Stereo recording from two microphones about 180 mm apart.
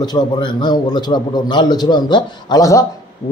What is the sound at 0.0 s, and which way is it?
A man's voice, 25° left (ahead or behind).